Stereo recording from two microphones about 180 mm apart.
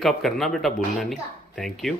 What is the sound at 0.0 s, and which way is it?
A woman's voice, centre (ahead or behind).